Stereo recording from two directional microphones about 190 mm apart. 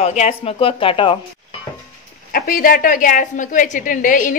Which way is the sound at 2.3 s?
50° left (ahead or behind).